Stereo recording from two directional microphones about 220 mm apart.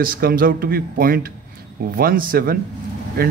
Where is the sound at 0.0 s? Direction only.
40° right (ahead or behind).